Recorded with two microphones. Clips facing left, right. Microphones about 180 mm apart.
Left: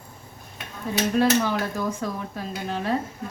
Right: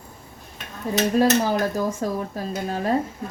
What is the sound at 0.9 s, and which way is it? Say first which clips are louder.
Speech: right 2 dB; 40° right (ahead or behind).